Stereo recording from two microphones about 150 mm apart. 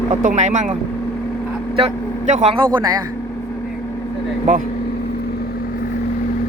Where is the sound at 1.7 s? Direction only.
50° right (ahead or behind).